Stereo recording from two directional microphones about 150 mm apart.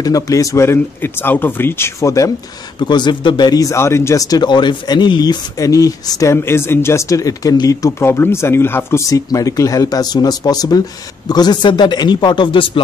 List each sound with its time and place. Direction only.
0.0 s a man's voice: 25° left (ahead or behind)